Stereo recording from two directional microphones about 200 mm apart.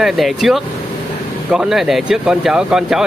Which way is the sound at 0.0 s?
Centre (ahead or behind).